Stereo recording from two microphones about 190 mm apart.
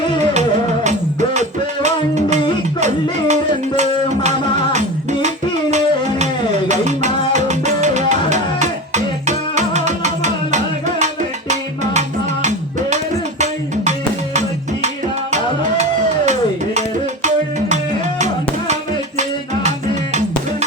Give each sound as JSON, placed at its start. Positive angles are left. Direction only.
{"t": 0.9, "sound": "music", "side_deg": -35}
{"t": 6.7, "sound": "music", "side_deg": -40}
{"t": 15.8, "sound": "music", "side_deg": -35}